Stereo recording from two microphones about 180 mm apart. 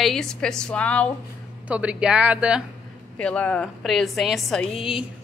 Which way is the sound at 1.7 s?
5° right (ahead or behind).